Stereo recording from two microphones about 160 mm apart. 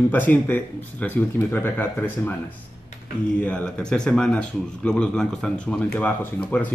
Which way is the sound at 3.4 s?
5° left (ahead or behind).